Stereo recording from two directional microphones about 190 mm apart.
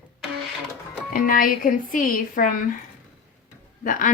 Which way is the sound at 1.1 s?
50° left (ahead or behind).